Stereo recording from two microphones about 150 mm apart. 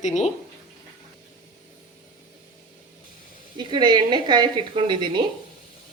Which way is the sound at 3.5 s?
30° right (ahead or behind).